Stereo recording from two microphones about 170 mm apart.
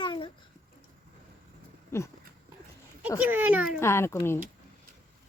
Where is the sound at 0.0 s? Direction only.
25° left (ahead or behind).